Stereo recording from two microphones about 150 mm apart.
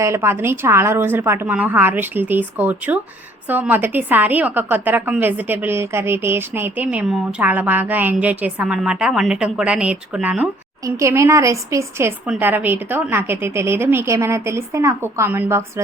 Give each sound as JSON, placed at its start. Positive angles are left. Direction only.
{"t": 0.0, "sound": "a woman's voice", "side_deg": -20}
{"t": 10.8, "sound": "a woman's voice", "side_deg": -20}